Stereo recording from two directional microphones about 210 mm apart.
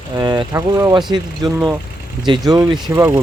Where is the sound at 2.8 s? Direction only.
10° right (ahead or behind).